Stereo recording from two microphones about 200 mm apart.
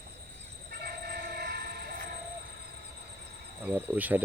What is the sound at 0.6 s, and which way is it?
Train, 50° right (ahead or behind).